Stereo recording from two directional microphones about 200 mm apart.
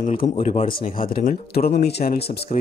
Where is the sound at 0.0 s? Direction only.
40° left (ahead or behind).